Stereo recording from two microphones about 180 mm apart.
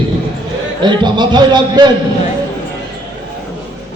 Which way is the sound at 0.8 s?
25° right (ahead or behind).